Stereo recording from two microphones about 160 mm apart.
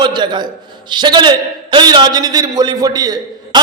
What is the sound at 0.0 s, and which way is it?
A man's voice, 30° right (ahead or behind).